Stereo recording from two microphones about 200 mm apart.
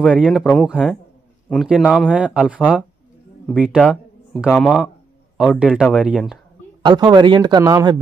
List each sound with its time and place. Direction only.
0.1 s speech: centre (ahead or behind)
6.8 s speech: 20° right (ahead or behind)